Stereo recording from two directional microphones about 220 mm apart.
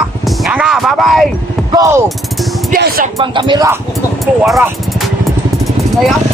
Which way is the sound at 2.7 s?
40° right (ahead or behind).